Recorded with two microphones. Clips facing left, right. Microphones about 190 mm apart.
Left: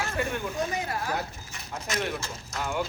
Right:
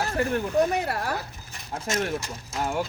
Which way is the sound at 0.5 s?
65° right (ahead or behind).